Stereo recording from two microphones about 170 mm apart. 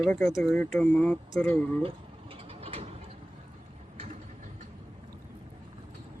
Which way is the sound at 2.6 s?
35° right (ahead or behind).